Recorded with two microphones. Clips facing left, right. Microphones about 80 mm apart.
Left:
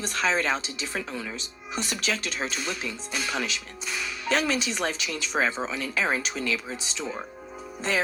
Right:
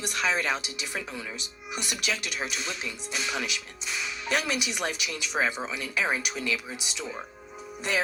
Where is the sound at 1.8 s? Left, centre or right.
Left.